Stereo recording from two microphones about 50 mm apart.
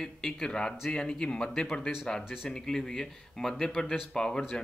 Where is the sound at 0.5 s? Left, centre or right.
Centre.